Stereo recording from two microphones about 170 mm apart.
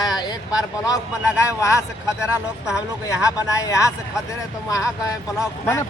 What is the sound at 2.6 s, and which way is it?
Speech, 5° right (ahead or behind).